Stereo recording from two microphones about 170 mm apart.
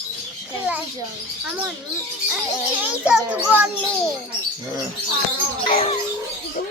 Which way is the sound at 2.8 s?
5° right (ahead or behind).